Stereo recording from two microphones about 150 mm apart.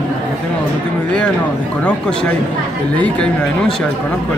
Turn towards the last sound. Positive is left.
turn(degrees=10)  # may be behind; listen again after turning